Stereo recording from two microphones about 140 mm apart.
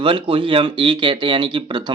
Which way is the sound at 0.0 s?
35° right (ahead or behind).